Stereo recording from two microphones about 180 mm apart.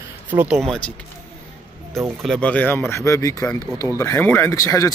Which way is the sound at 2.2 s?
5° left (ahead or behind).